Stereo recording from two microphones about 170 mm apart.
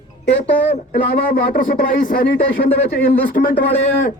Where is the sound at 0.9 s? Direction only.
60° left (ahead or behind).